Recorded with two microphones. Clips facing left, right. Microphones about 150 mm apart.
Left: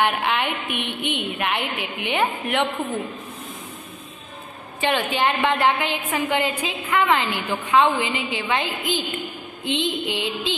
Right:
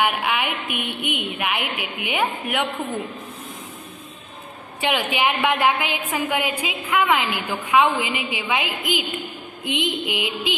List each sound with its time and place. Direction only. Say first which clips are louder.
0.0 s a woman's voice: left 1 dB; 5° right (ahead or behind)
4.7 s a woman's voice: left 1 dB; 10° right (ahead or behind)